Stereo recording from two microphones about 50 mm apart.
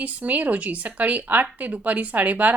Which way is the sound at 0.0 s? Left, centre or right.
Right.